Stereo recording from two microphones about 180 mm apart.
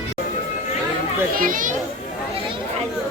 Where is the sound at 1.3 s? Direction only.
50° right (ahead or behind).